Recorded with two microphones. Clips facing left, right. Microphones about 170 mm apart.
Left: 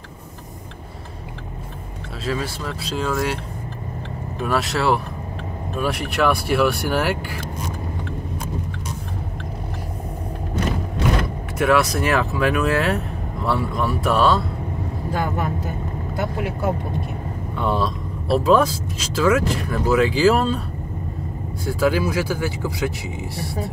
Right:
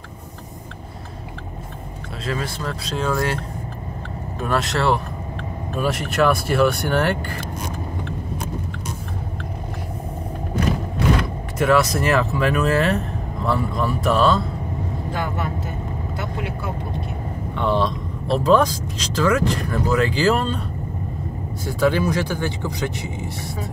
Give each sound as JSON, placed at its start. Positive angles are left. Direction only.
{"t": 2.2, "sound": "speech", "side_deg": 5}
{"t": 4.4, "sound": "speech", "side_deg": 0}
{"t": 11.5, "sound": "speech", "side_deg": 0}
{"t": 15.1, "sound": "speech", "side_deg": 45}
{"t": 17.6, "sound": "speech", "side_deg": 5}
{"t": 21.6, "sound": "speech", "side_deg": 0}